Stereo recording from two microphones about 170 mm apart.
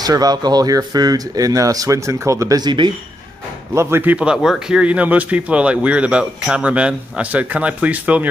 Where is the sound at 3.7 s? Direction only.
15° right (ahead or behind).